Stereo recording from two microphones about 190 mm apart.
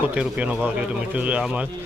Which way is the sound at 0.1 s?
5° right (ahead or behind).